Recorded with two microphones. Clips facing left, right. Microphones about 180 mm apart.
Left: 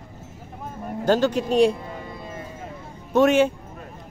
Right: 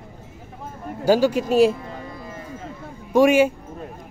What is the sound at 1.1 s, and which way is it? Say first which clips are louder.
Speech: right 2 dB; 10° right (ahead or behind).